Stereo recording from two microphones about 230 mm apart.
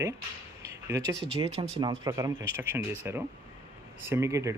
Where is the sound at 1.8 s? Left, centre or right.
Centre.